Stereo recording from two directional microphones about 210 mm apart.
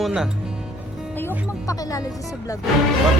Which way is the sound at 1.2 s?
15° left (ahead or behind).